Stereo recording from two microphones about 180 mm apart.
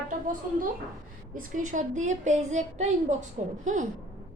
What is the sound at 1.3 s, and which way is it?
A woman's voice, 45° right (ahead or behind).